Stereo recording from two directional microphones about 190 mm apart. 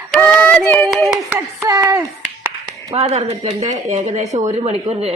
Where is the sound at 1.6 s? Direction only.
20° right (ahead or behind).